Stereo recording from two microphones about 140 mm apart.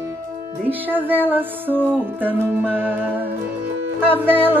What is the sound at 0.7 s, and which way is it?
Music, 15° right (ahead or behind).